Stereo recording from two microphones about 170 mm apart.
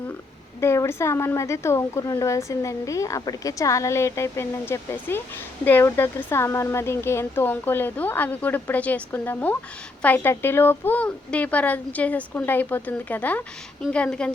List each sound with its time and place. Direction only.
0.6 s speech: 15° left (ahead or behind)